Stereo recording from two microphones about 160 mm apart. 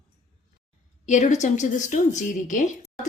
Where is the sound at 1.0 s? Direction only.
50° left (ahead or behind).